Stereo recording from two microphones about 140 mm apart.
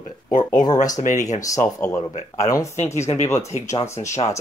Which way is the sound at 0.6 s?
25° left (ahead or behind).